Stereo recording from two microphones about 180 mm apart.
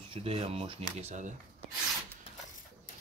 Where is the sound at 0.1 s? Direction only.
30° right (ahead or behind).